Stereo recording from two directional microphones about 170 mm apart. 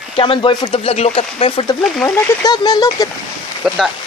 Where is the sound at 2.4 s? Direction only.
25° left (ahead or behind).